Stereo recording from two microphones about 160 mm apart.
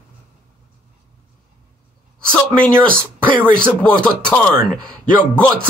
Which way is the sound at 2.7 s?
5° left (ahead or behind).